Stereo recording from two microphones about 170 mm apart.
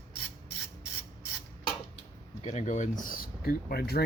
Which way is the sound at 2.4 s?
40° left (ahead or behind).